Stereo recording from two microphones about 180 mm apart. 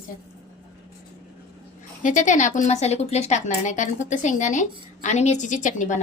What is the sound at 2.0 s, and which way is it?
Speech, 45° left (ahead or behind).